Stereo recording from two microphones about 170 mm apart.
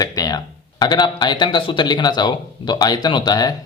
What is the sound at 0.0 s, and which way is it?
Speech, 20° left (ahead or behind).